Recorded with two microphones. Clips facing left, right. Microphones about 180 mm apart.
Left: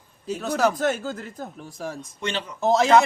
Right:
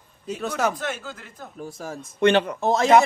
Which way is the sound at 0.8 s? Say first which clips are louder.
Left 7 dB; 45° left (ahead or behind).